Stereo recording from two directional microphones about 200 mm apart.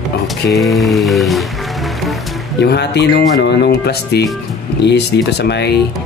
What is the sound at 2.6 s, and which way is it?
Speech, 55° left (ahead or behind).